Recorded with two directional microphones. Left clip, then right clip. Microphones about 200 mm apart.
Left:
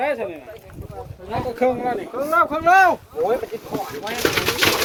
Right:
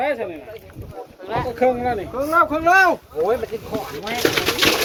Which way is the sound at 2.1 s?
10° right (ahead or behind).